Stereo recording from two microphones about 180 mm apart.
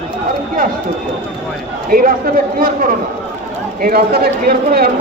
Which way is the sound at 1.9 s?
55° right (ahead or behind).